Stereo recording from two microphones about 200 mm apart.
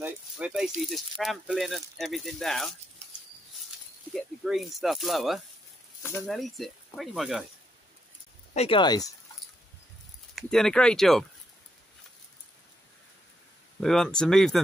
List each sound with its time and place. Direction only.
0.0 s rattle: 5° right (ahead or behind)
0.7 s speech: centre (ahead or behind)
3.0 s a sound: 30° right (ahead or behind)
4.1 s speech: centre (ahead or behind)
8.5 s speech: 25° left (ahead or behind)
10.3 s speech: 5° left (ahead or behind)
13.7 s speech: 5° left (ahead or behind)